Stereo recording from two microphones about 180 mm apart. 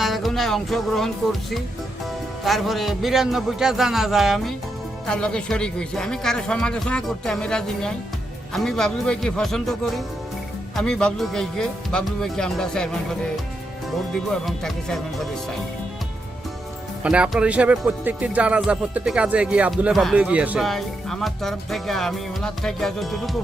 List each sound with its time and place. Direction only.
0.0 s speech: centre (ahead or behind)
17.0 s speech: 5° right (ahead or behind)